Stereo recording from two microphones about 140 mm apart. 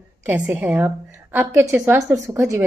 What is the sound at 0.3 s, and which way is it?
A woman's voice, 15° right (ahead or behind).